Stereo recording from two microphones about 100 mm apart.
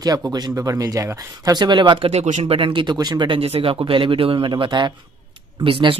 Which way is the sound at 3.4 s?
70° right (ahead or behind).